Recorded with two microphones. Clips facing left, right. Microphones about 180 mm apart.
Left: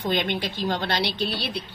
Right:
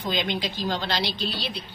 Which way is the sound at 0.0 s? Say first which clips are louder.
Left 2 dB; 60° left (ahead or behind).